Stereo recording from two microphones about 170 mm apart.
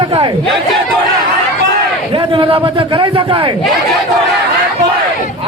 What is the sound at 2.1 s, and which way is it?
A man's voice, 30° right (ahead or behind).